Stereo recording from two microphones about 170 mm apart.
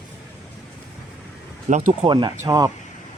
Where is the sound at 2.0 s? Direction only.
30° right (ahead or behind).